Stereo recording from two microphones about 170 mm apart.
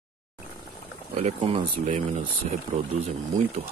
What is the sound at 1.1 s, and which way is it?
Speech, 40° right (ahead or behind).